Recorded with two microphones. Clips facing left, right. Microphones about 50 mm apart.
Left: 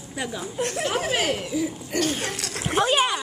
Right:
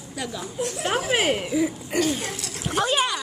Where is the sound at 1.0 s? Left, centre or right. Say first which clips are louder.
Right 2 dB; right.